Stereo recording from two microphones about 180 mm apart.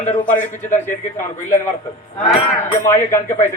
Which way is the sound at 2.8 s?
15° left (ahead or behind).